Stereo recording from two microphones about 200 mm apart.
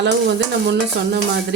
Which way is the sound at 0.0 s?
60° right (ahead or behind).